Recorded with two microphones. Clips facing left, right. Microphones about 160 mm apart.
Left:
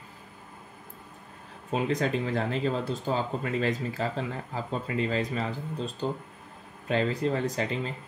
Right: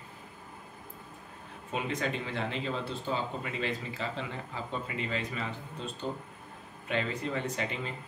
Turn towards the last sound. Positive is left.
turn(degrees=35)  # may be behind; listen again after turning